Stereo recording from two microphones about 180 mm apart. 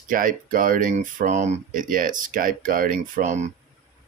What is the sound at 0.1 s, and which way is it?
Speech, 50° right (ahead or behind).